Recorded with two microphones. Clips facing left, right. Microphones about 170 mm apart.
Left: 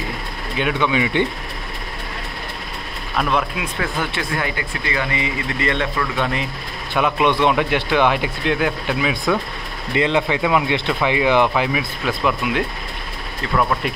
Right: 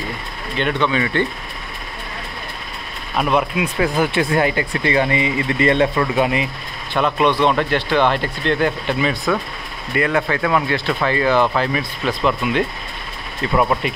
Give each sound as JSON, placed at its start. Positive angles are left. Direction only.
{"t": 0.6, "sound": "speech", "side_deg": 10}
{"t": 3.2, "sound": "speech", "side_deg": -5}
{"t": 4.2, "sound": "speech", "side_deg": -30}
{"t": 7.0, "sound": "speech", "side_deg": 5}
{"t": 9.9, "sound": "speech", "side_deg": 20}